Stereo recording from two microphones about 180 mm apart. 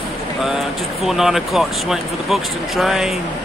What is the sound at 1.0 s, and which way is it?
Speech, centre (ahead or behind).